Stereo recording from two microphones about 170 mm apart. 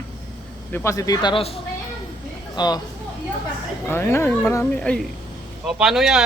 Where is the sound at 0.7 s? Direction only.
15° left (ahead or behind); by 1.5 s 30° left (ahead or behind).